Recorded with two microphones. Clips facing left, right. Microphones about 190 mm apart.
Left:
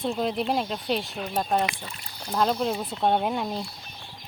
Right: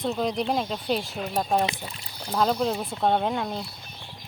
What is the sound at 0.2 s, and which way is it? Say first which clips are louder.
Speech: even; 5° left (ahead or behind).